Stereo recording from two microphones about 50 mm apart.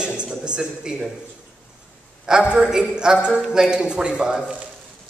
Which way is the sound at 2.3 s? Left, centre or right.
Centre.